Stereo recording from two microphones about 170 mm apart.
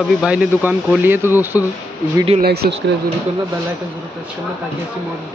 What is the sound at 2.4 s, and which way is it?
Speech, 70° right (ahead or behind).